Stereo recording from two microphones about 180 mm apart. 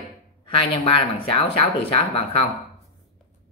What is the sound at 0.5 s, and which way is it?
Speech, 30° left (ahead or behind).